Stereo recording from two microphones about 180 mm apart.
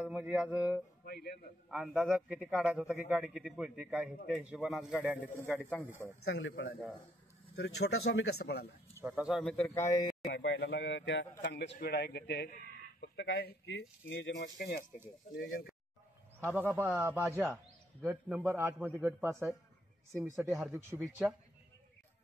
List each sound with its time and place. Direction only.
0.0 s speech: 5° right (ahead or behind)
1.0 s speech: 60° left (ahead or behind)
1.7 s speech: 5° right (ahead or behind)
5.5 s speech: 5° left (ahead or behind)
6.2 s speech: 80° left
7.5 s speech: 80° left; by 8.7 s 65° left (ahead or behind)
9.0 s speech: 5° right (ahead or behind)
9.8 s a man's voice: 15° left (ahead or behind)
10.3 s speech: 70° left (ahead or behind)
16.4 s a man's voice: 10° right (ahead or behind)
21.0 s speech: centre (ahead or behind)